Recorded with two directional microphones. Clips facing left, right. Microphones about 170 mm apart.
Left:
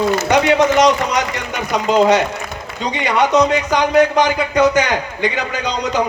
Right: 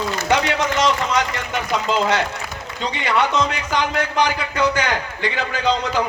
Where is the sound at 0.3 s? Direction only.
20° left (ahead or behind).